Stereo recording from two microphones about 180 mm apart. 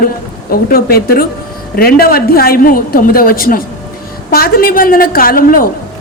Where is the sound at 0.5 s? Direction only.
55° left (ahead or behind).